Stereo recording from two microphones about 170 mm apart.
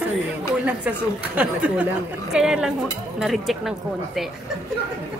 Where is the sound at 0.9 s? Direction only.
10° right (ahead or behind).